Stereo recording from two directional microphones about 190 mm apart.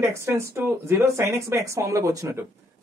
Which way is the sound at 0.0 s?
15° right (ahead or behind).